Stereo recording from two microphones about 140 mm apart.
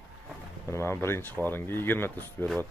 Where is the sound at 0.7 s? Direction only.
20° left (ahead or behind).